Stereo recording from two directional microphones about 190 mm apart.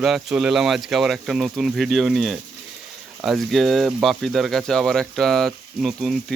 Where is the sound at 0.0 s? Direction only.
Centre (ahead or behind).